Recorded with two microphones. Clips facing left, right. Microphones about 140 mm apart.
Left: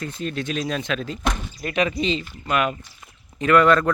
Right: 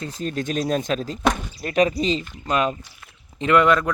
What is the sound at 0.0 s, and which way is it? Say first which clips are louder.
A man's voice: right 1 dB; 40° right (ahead or behind).